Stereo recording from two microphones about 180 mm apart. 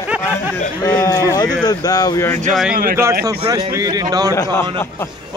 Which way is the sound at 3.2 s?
20° right (ahead or behind).